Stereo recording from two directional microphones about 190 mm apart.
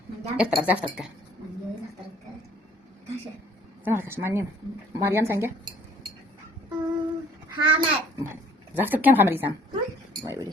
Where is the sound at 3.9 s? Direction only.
10° right (ahead or behind).